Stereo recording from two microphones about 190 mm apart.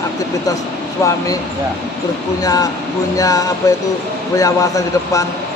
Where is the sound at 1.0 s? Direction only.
15° left (ahead or behind).